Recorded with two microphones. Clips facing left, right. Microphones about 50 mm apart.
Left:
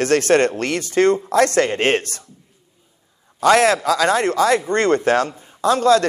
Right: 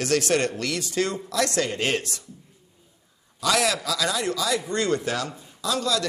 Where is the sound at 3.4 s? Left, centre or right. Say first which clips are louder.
Left 9 dB; left.